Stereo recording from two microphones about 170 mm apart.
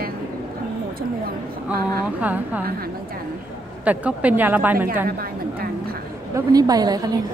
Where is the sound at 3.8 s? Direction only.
10° right (ahead or behind).